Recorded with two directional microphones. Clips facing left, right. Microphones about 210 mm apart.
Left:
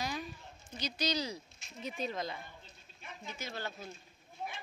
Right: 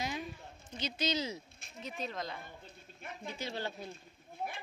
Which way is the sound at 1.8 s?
Centre (ahead or behind).